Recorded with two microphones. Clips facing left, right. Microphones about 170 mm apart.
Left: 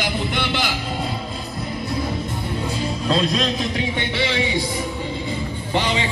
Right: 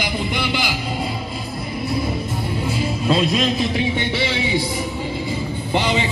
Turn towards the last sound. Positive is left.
turn(degrees=-15)  # may be behind; listen again after turning